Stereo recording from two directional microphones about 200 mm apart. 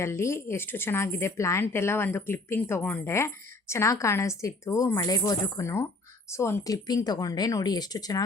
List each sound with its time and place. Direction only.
0.0 s a woman's voice: 15° left (ahead or behind)